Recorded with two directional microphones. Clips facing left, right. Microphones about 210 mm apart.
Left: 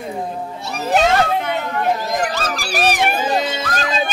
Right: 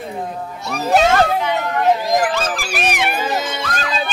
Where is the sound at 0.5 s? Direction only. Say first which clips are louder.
Right 1 dB; 30° left (ahead or behind).